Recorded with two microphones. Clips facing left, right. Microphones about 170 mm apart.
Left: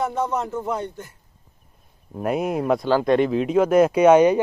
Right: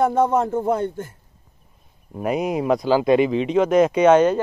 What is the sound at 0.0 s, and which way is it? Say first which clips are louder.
Speech: right 6 dB; 50° right (ahead or behind).